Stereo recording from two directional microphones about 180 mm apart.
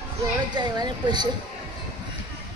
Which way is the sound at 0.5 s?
25° right (ahead or behind).